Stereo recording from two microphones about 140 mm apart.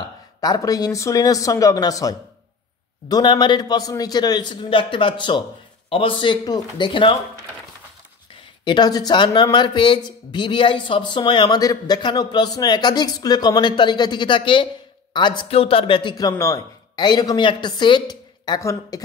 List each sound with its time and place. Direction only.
0.4 s speech: 25° left (ahead or behind)
8.6 s speech: 30° left (ahead or behind)